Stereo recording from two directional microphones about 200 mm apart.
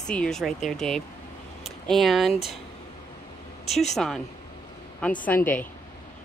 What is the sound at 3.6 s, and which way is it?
Speech, 35° left (ahead or behind).